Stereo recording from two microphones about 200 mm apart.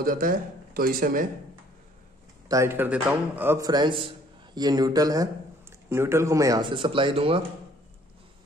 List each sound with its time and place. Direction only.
0.0 s speech: 45° right (ahead or behind)
2.4 s a man's voice: 15° right (ahead or behind)